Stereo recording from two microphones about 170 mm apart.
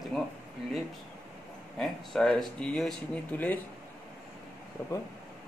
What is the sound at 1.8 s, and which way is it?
Speech, 5° left (ahead or behind).